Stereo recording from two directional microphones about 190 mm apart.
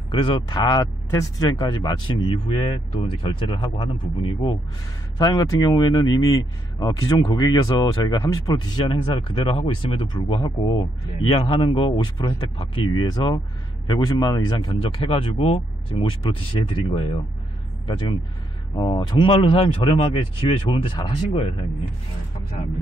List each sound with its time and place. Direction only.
0.1 s speech: 25° left (ahead or behind)
18.8 s speech: 20° left (ahead or behind)